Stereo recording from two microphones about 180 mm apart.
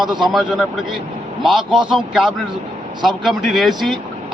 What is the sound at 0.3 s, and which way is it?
Speech, centre (ahead or behind).